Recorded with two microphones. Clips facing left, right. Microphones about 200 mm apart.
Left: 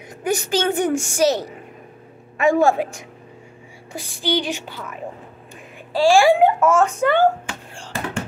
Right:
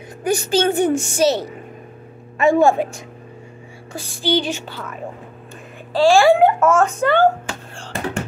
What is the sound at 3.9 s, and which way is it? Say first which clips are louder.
Speech: right 3 dB; 15° left (ahead or behind).